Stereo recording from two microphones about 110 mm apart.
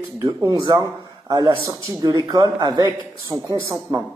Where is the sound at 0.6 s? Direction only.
35° right (ahead or behind).